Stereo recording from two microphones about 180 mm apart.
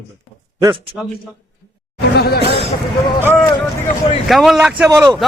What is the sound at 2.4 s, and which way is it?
Speech, 35° right (ahead or behind).